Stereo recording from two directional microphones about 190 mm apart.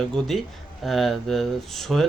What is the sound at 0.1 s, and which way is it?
Speech, centre (ahead or behind).